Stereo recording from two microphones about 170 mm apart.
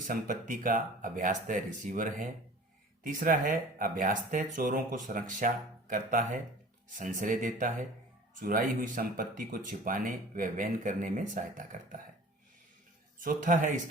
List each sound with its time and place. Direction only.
0.1 s speech: 50° right (ahead or behind)
13.1 s speech: 50° right (ahead or behind)